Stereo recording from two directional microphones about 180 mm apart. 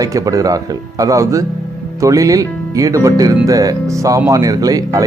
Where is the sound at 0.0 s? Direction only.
20° right (ahead or behind).